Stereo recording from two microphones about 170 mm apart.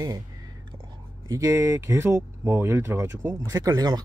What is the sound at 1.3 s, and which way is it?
Speech, 15° right (ahead or behind).